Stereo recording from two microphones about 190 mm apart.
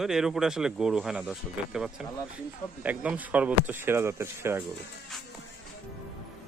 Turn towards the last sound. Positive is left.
turn(degrees=-15)  # may be behind; listen again after turning